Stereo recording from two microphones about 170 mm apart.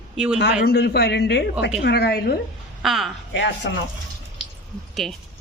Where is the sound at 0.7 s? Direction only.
70° left (ahead or behind).